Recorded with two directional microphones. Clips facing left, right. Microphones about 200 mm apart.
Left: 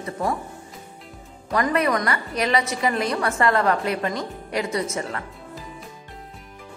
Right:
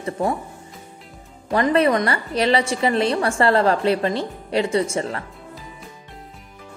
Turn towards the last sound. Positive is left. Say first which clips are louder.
# right 5 dB
turn(degrees=-30)  # may be behind; listen again after turning